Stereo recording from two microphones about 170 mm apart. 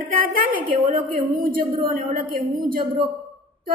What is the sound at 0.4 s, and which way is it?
A woman's voice, 50° right (ahead or behind).